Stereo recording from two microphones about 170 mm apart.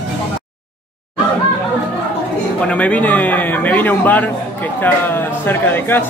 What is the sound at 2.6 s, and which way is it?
A man's voice, 10° left (ahead or behind).